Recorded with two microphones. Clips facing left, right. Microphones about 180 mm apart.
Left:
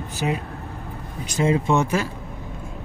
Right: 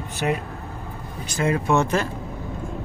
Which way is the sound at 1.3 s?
20° left (ahead or behind).